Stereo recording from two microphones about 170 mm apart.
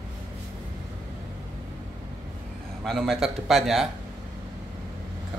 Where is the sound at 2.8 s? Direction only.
Centre (ahead or behind).